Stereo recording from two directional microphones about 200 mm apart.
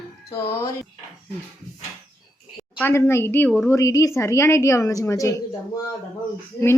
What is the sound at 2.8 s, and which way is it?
A woman's voice, 15° left (ahead or behind).